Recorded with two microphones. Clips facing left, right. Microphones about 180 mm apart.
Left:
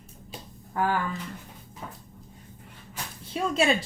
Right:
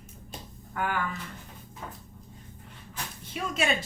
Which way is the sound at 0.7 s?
30° left (ahead or behind).